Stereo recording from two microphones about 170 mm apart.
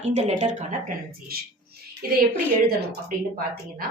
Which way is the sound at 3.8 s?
55° right (ahead or behind).